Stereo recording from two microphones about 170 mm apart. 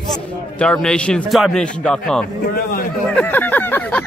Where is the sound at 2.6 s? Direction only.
55° left (ahead or behind).